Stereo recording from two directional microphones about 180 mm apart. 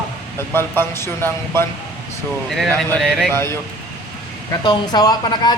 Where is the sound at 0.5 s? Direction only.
15° left (ahead or behind).